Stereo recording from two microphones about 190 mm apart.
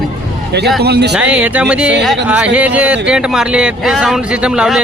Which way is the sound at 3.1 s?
5° right (ahead or behind).